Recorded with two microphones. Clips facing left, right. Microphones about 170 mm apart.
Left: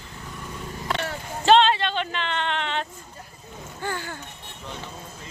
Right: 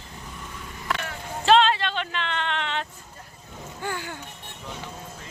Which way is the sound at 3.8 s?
15° right (ahead or behind).